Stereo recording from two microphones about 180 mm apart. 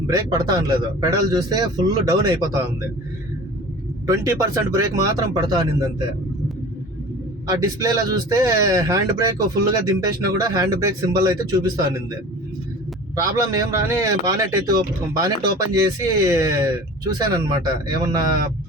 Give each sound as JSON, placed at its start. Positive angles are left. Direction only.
{"t": 0.1, "sound": "speech", "side_deg": -20}
{"t": 4.0, "sound": "speech", "side_deg": -15}
{"t": 7.4, "sound": "speech", "side_deg": -20}
{"t": 13.1, "sound": "a man's voice", "side_deg": -20}